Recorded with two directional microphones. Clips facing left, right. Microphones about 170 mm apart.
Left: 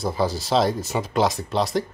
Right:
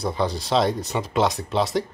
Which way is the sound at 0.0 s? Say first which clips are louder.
Left 1 dB; 5° left (ahead or behind).